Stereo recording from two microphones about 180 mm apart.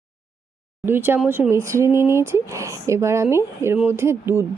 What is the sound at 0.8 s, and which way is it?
Speech, 10° right (ahead or behind).